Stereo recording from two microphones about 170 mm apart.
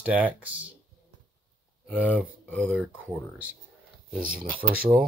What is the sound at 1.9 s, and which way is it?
Speech, 10° right (ahead or behind).